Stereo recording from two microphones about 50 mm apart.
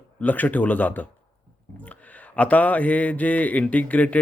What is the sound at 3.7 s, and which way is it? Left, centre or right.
Speech, left.